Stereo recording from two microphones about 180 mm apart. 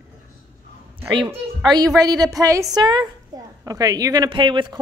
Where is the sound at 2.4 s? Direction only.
15° right (ahead or behind).